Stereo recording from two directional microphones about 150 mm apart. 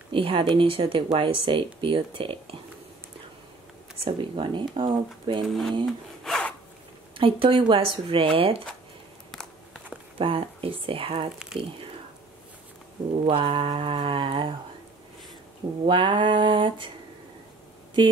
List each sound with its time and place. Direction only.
0.1 s speech: 35° right (ahead or behind)
4.0 s speech: 35° right (ahead or behind)
5.4 s speech: centre (ahead or behind)
5.9 s sawing: centre (ahead or behind)
7.2 s speech: 35° right (ahead or behind)
10.1 s speech: 35° right (ahead or behind)
13.2 s speech: 35° right (ahead or behind)
15.8 s speech: 30° right (ahead or behind)